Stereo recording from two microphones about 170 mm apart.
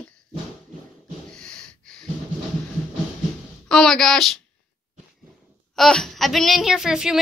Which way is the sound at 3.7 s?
5° left (ahead or behind).